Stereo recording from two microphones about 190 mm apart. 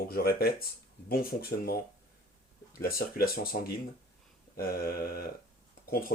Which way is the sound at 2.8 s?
50° left (ahead or behind).